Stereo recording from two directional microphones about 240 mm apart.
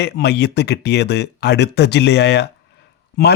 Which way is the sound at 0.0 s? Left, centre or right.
Left.